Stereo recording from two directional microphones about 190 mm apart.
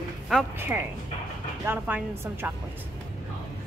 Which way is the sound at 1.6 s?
10° right (ahead or behind).